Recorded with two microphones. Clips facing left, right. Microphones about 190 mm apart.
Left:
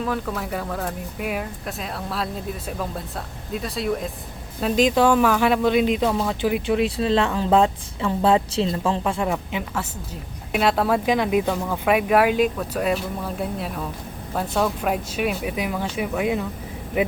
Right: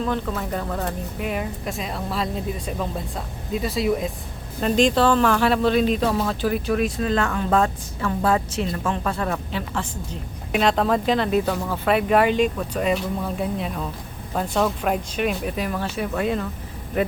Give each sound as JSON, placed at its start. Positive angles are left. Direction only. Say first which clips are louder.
{"t": 0.0, "sound": "speech", "louder": "right 1 dB", "side_deg": 5}
{"t": 6.1, "sound": "speech", "louder": "even", "side_deg": 0}
{"t": 6.4, "sound": "speech", "louder": "left 3 dB", "side_deg": 20}
{"t": 11.4, "sound": "speech", "louder": "left 1 dB", "side_deg": 0}